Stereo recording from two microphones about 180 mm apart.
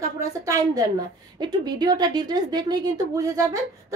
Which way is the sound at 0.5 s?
20° right (ahead or behind).